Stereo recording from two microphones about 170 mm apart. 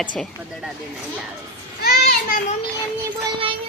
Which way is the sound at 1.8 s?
65° left (ahead or behind).